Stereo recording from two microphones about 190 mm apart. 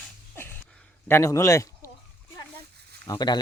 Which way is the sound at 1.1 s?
15° left (ahead or behind).